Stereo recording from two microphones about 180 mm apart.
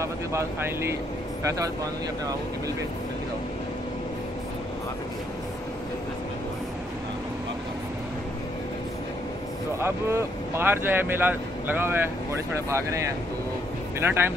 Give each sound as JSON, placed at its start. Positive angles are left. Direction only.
{"t": 0.0, "sound": "speech", "side_deg": -15}
{"t": 9.8, "sound": "speech", "side_deg": -15}